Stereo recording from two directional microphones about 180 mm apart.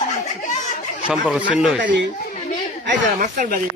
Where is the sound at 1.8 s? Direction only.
80° right.